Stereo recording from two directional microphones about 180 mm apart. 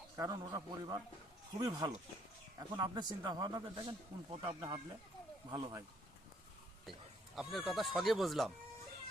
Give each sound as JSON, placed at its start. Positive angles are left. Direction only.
{"t": 0.2, "sound": "a man's voice", "side_deg": -20}
{"t": 7.3, "sound": "speech", "side_deg": 0}